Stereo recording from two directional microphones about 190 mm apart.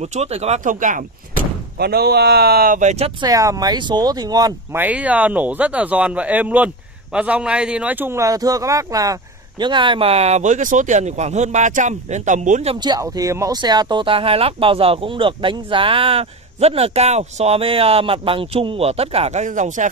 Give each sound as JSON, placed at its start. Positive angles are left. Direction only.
{"t": 0.0, "sound": "speech", "side_deg": -35}
{"t": 1.8, "sound": "speech", "side_deg": -55}
{"t": 3.2, "sound": "speech", "side_deg": -20}
{"t": 4.8, "sound": "speech", "side_deg": -5}
{"t": 12.7, "sound": "speech", "side_deg": -20}